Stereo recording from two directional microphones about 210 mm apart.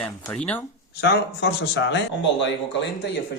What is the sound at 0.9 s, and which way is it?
A man's voice, 50° left (ahead or behind).